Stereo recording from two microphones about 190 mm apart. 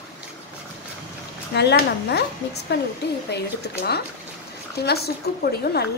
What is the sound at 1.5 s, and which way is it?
Speech, 60° left (ahead or behind).